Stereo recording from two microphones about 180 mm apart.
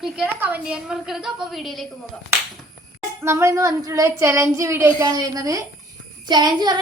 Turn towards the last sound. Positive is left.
turn(degrees=-25)  # may be behind; listen again after turning